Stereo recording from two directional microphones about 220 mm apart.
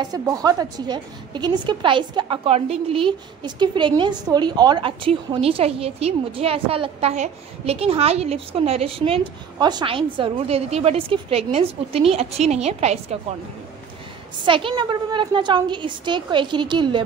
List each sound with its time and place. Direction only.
0.0 s a woman's voice: 15° right (ahead or behind)
14.4 s a woman's voice: 25° right (ahead or behind)